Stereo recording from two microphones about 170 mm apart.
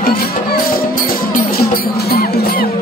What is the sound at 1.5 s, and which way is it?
Music, 60° left (ahead or behind).